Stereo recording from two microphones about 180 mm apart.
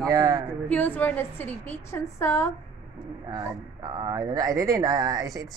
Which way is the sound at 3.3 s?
20° right (ahead or behind).